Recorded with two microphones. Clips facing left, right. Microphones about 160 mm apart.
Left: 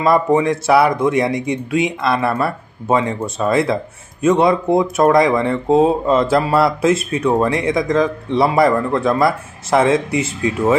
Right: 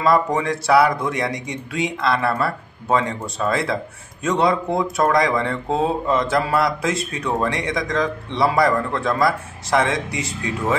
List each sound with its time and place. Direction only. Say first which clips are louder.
0.0 s speech: left 4 dB; 25° left (ahead or behind)